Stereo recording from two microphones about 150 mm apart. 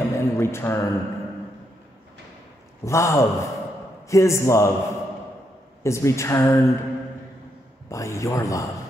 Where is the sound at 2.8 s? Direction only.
20° left (ahead or behind).